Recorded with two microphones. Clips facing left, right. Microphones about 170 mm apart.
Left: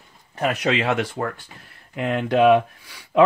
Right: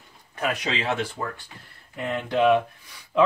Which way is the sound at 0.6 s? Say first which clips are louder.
Left 5 dB; 70° left (ahead or behind).